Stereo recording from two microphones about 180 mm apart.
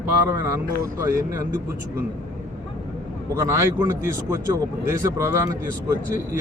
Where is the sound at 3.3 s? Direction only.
15° right (ahead or behind).